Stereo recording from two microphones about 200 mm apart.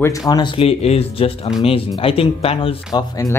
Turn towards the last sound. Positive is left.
turn(degrees=20)  # may be behind; listen again after turning